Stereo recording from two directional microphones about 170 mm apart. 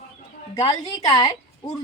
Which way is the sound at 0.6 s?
25° left (ahead or behind).